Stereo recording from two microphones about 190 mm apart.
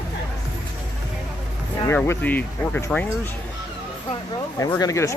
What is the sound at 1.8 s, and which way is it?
Speech, 15° left (ahead or behind).